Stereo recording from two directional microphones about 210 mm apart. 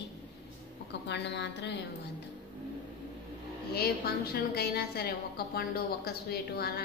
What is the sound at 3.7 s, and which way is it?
A woman's voice, 45° left (ahead or behind).